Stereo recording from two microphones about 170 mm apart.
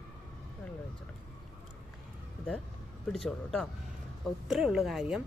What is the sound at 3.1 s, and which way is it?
A woman's voice, centre (ahead or behind).